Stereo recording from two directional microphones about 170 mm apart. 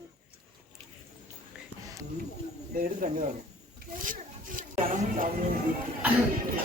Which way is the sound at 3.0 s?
50° right (ahead or behind).